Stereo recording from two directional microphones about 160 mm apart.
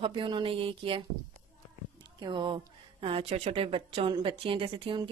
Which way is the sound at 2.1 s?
30° right (ahead or behind).